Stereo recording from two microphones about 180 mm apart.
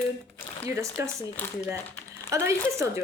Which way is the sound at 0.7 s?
15° right (ahead or behind).